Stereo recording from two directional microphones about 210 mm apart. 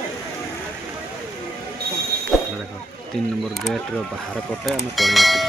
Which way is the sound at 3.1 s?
Centre (ahead or behind).